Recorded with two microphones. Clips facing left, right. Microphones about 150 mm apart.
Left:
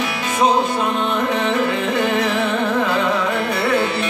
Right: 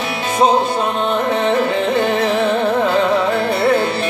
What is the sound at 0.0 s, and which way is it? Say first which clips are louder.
Music: right 3 dB; 30° right (ahead or behind).